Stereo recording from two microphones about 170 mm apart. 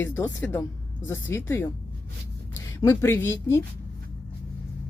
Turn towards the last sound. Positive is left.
turn(degrees=15)  # may be behind; listen again after turning